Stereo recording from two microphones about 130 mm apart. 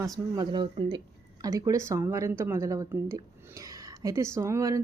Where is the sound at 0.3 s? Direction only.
40° right (ahead or behind).